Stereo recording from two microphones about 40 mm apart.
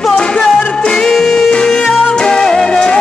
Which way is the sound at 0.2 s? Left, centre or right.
Left.